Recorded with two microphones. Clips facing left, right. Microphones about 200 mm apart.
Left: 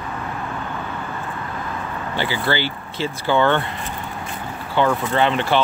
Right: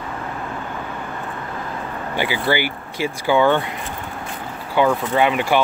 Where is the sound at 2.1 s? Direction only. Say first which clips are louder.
Right 2 dB; 15° right (ahead or behind).